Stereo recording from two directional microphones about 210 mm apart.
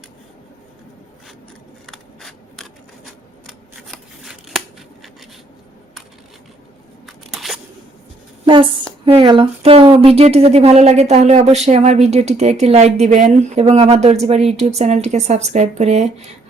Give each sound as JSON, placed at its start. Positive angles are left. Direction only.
{"t": 1.9, "sound": "scissors", "side_deg": 0}
{"t": 7.3, "sound": "scissors", "side_deg": 0}
{"t": 8.4, "sound": "a sound", "side_deg": -25}
{"t": 9.0, "sound": "speech", "side_deg": -25}